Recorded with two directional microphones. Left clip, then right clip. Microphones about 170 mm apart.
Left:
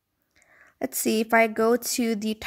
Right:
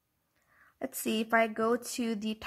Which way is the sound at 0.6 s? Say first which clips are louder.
Left 9 dB; 25° left (ahead or behind).